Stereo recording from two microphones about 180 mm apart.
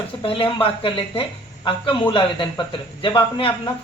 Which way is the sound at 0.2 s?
30° left (ahead or behind).